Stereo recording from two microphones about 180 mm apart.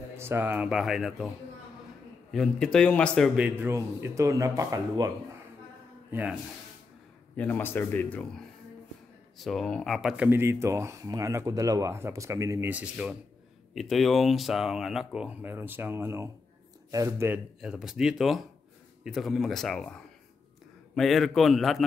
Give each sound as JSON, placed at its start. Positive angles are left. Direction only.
{"t": 0.2, "sound": "speech", "side_deg": -10}
{"t": 2.3, "sound": "speech", "side_deg": 0}
{"t": 3.3, "sound": "speech", "side_deg": -10}
{"t": 7.3, "sound": "a man's voice", "side_deg": 10}
{"t": 9.4, "sound": "speech", "side_deg": 0}
{"t": 17.6, "sound": "speech", "side_deg": -5}